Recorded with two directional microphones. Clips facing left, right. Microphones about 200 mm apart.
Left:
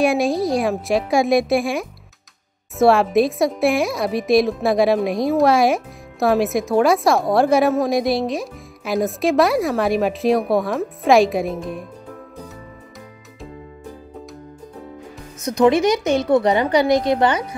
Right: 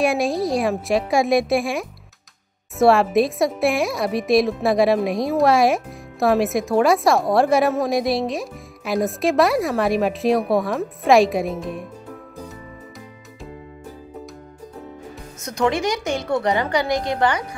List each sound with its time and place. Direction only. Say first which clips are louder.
0.0 s speech: left 2 dB; centre (ahead or behind)
15.4 s a woman's voice: left 6 dB; 20° left (ahead or behind)